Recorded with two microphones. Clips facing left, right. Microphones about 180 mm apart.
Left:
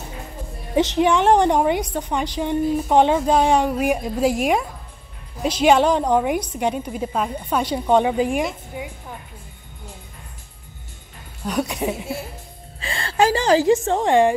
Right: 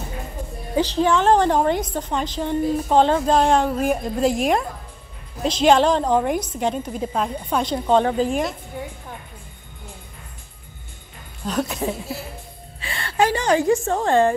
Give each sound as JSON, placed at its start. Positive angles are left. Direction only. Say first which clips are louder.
{"t": 0.7, "sound": "a woman's voice", "louder": "left 1 dB", "side_deg": 15}
{"t": 11.4, "sound": "a woman's voice", "louder": "left 1 dB", "side_deg": 10}
{"t": 12.8, "sound": "a woman's voice", "louder": "left 2 dB", "side_deg": 35}